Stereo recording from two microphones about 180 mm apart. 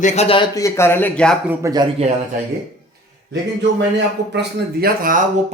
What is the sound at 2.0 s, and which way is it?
Speech, 35° right (ahead or behind).